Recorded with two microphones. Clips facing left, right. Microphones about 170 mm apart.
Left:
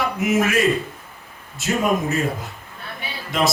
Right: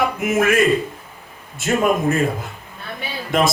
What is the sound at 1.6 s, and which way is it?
Speech, 50° right (ahead or behind).